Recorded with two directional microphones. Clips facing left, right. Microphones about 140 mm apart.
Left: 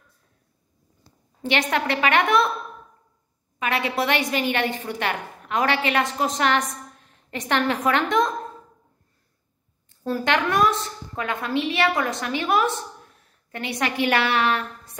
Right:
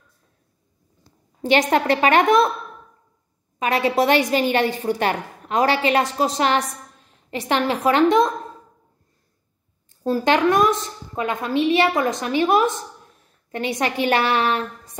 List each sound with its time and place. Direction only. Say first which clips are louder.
1.4 s a woman's voice: right 5 dB; 40° right (ahead or behind)
3.5 s a woman's voice: right 5 dB; 35° right (ahead or behind)
10.0 s a woman's voice: right 5 dB; 35° right (ahead or behind)
11.1 s a woman's voice: right 4 dB; 20° right (ahead or behind)